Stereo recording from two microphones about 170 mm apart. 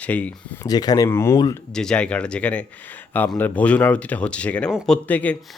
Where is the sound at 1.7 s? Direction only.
5° left (ahead or behind).